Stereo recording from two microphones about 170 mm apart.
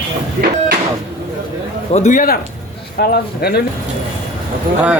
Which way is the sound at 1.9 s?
45° left (ahead or behind).